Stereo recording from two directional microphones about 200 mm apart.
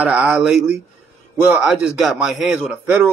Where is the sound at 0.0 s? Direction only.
5° right (ahead or behind).